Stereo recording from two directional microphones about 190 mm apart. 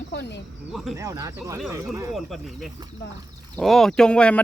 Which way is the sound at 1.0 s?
15° right (ahead or behind).